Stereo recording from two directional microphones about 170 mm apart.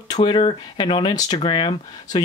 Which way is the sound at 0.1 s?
30° left (ahead or behind).